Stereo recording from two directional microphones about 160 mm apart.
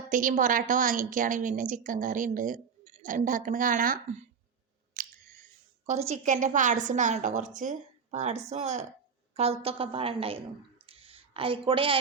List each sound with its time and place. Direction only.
0.1 s a woman's voice: 55° right (ahead or behind)
4.9 s chewing: 60° right (ahead or behind)
5.8 s a woman's voice: 45° right (ahead or behind)
10.8 s a sound: 35° right (ahead or behind)